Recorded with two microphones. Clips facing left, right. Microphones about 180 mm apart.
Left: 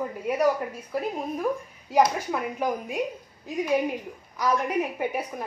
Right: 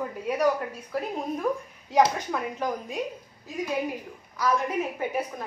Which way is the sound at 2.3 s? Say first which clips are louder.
Left 2 dB; 10° left (ahead or behind).